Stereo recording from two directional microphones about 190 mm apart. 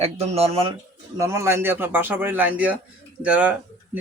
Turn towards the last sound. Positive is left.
turn(degrees=-5)  # may be behind; listen again after turning